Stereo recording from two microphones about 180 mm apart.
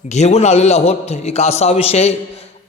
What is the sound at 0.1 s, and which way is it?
A man's voice, 40° left (ahead or behind).